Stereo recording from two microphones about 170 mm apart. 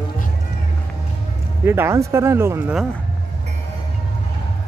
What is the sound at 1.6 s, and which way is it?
Speech, 15° right (ahead or behind).